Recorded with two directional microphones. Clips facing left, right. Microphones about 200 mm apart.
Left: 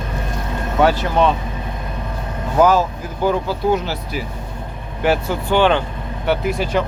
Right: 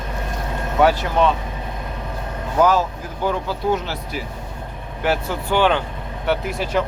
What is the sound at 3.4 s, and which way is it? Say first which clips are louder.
Speech: left 3 dB; 5° left (ahead or behind).